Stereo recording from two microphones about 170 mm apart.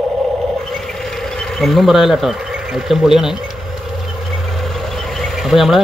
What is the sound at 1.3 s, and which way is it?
Speech, centre (ahead or behind).